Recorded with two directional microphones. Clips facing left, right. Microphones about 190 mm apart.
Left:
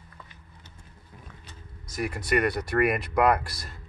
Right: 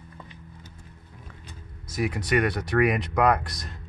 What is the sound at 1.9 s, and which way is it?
Speech, centre (ahead or behind).